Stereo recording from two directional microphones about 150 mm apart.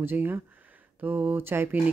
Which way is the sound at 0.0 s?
15° right (ahead or behind).